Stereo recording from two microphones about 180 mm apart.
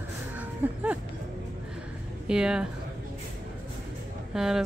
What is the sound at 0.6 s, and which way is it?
Speech, 10° right (ahead or behind).